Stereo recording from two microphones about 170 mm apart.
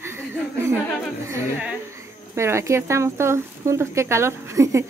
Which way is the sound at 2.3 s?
15° right (ahead or behind).